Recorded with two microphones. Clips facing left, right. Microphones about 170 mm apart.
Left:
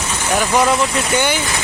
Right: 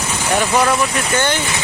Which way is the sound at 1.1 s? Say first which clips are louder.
Even; 10° left (ahead or behind).